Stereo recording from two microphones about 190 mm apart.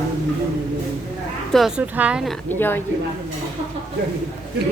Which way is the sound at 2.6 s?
10° left (ahead or behind).